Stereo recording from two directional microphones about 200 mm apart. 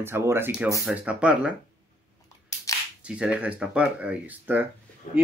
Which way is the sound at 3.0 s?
5° right (ahead or behind).